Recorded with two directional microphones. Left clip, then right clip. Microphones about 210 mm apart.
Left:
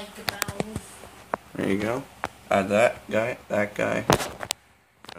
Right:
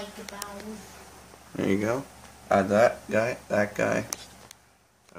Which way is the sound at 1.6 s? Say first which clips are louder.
Right 1 dB; 5° right (ahead or behind).